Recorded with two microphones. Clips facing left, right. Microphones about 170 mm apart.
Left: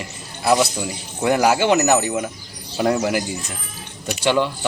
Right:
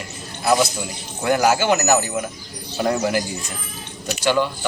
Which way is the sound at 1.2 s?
25° left (ahead or behind).